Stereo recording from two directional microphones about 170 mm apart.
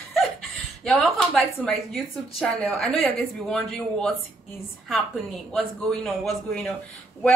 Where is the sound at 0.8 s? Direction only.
Centre (ahead or behind).